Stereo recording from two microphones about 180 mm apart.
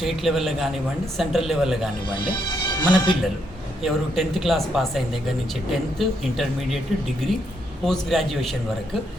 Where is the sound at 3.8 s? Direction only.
Centre (ahead or behind).